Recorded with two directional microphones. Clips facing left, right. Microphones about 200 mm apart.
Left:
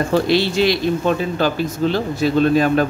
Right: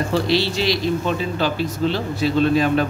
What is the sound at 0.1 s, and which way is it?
A man's voice, 50° left (ahead or behind).